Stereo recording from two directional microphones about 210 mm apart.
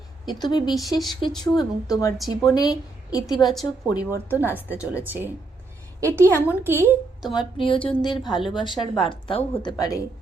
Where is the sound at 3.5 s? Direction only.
Centre (ahead or behind).